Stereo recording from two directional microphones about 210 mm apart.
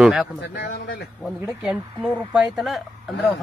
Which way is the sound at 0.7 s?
50° left (ahead or behind).